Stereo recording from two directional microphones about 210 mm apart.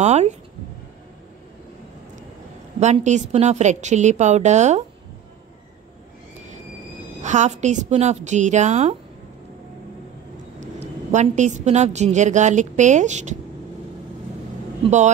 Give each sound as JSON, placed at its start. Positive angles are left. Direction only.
{"t": 0.0, "sound": "a woman's voice", "side_deg": -30}
{"t": 2.8, "sound": "a woman's voice", "side_deg": -35}
{"t": 7.2, "sound": "a woman's voice", "side_deg": -35}
{"t": 10.6, "sound": "a woman's voice", "side_deg": -35}